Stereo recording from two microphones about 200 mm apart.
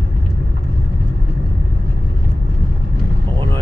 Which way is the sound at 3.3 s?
25° right (ahead or behind).